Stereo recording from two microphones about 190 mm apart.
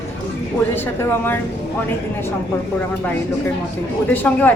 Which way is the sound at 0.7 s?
10° left (ahead or behind).